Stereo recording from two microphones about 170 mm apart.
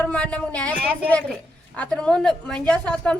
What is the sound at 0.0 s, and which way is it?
A woman's voice, 10° left (ahead or behind).